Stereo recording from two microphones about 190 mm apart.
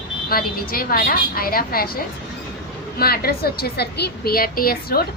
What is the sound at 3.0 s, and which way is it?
A woman's voice, 55° left (ahead or behind).